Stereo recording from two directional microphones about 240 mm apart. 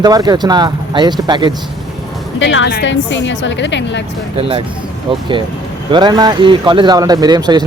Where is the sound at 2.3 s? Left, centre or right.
Left.